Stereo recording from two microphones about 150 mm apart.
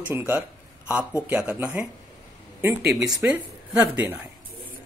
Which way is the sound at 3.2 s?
10° right (ahead or behind).